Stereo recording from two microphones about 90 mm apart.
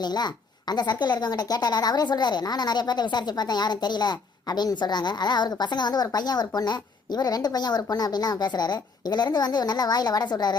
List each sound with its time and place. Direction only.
0.0 s a woman's voice: 50° left (ahead or behind)